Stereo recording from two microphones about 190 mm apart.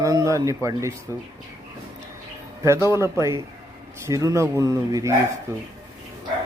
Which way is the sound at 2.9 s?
15° right (ahead or behind).